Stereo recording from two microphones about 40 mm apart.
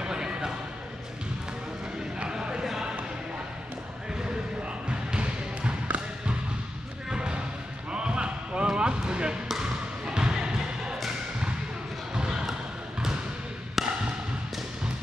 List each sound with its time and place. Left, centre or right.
0.0 s a sound: centre
2.1 s a sound: right
2.6 s basketball bounce: centre
4.6 s basketball bounce: right
7.1 s basketball bounce: right
12.1 s basketball bounce: centre
13.8 s wood block: centre